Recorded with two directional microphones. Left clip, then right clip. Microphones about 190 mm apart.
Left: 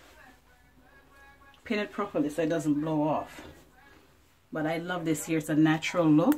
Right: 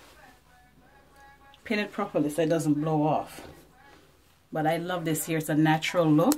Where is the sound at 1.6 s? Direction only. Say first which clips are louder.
Right 2 dB; 10° right (ahead or behind).